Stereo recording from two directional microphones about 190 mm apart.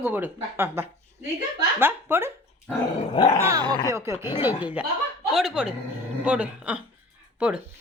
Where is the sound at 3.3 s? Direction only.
15° right (ahead or behind).